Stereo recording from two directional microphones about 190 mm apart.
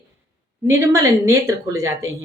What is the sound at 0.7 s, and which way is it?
A woman's voice, 15° right (ahead or behind).